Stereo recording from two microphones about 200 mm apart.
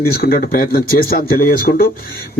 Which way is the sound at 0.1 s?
45° left (ahead or behind).